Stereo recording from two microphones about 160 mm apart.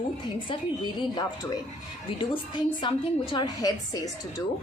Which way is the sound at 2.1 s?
30° left (ahead or behind).